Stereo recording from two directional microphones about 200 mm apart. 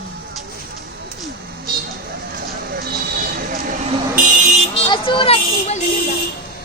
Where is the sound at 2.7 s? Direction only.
50° right (ahead or behind).